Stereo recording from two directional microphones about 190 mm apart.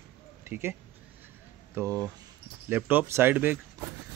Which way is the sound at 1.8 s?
15° right (ahead or behind).